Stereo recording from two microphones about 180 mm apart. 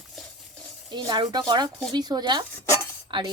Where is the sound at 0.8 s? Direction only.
25° right (ahead or behind).